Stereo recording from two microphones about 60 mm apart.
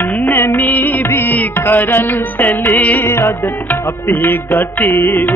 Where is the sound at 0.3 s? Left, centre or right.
Left.